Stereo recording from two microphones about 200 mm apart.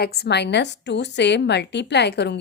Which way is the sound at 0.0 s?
50° left (ahead or behind).